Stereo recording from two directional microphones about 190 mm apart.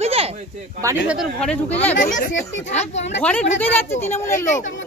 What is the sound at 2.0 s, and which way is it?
A woman's voice, 40° left (ahead or behind).